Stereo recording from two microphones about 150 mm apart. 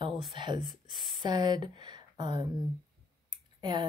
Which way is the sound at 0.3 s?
30° right (ahead or behind).